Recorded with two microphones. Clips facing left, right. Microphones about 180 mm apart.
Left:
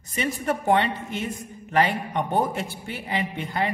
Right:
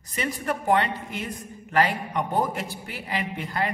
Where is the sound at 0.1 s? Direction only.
25° left (ahead or behind).